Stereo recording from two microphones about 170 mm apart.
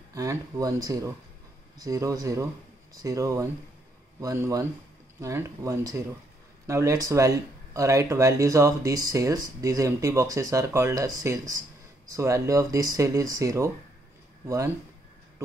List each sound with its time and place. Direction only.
0.1 s speech: 20° right (ahead or behind)